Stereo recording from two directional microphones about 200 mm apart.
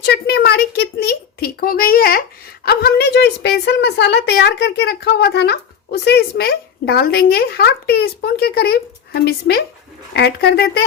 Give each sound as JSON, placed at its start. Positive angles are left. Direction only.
{"t": 0.0, "sound": "a woman's voice", "side_deg": 55}